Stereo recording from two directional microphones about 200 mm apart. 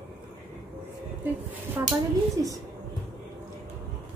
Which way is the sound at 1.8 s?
15° right (ahead or behind).